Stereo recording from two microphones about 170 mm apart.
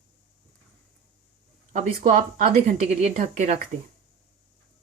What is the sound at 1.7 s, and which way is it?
A woman's voice, 50° right (ahead or behind).